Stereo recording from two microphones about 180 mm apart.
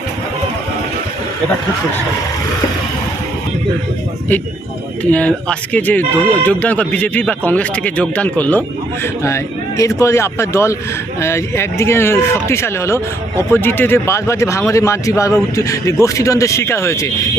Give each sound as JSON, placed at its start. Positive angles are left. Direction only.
{"t": 5.1, "sound": "speech", "side_deg": 10}